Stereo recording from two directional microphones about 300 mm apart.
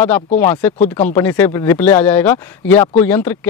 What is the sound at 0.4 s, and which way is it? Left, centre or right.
Speech, centre.